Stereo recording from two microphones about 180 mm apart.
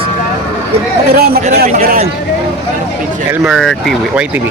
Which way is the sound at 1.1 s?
60° right (ahead or behind).